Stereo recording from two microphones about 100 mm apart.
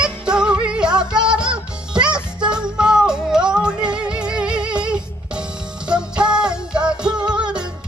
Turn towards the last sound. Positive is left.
turn(degrees=-10)  # may be behind; listen again after turning